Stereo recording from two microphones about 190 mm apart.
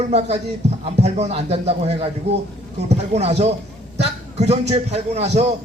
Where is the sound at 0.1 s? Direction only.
35° right (ahead or behind).